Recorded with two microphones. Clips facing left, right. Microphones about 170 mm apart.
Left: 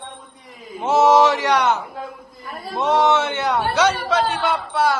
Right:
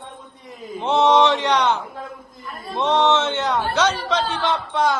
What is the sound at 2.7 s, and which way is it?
A man's voice, 10° left (ahead or behind).